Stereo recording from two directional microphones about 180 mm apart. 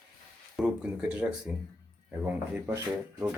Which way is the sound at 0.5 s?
5° right (ahead or behind).